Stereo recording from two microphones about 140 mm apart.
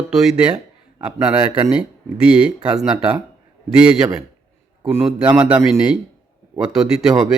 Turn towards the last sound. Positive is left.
turn(degrees=-5)  # may be behind; listen again after turning